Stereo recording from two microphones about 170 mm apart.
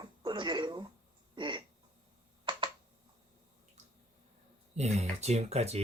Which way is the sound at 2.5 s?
30° right (ahead or behind).